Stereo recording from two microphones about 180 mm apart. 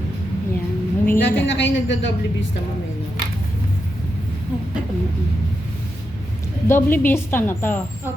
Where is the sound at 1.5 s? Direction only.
80° left.